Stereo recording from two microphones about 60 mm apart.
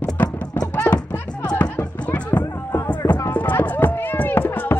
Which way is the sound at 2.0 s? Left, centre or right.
Left.